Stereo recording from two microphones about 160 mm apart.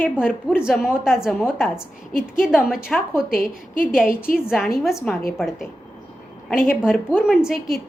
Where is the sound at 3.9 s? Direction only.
5° right (ahead or behind).